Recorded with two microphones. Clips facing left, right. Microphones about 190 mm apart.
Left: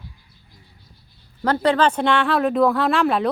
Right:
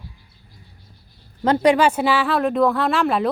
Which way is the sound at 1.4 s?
15° right (ahead or behind).